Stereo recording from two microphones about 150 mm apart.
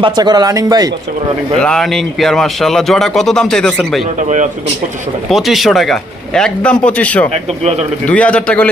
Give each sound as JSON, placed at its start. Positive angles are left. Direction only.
{"t": 0.0, "sound": "a man's voice", "side_deg": -30}
{"t": 1.6, "sound": "a man's voice", "side_deg": 5}
{"t": 4.2, "sound": "speech", "side_deg": -55}
{"t": 5.3, "sound": "a man's voice", "side_deg": 0}